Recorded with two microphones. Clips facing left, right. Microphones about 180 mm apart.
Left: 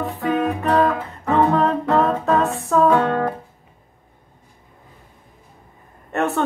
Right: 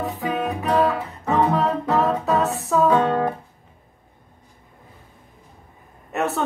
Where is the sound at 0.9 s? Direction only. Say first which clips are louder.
Left 2 dB; 15° right (ahead or behind).